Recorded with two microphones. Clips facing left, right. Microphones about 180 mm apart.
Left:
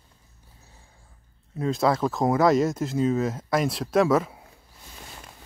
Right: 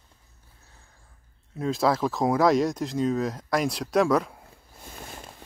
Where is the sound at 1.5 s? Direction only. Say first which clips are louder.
Left 1 dB; centre (ahead or behind).